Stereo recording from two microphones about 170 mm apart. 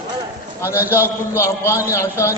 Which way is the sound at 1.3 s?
15° left (ahead or behind).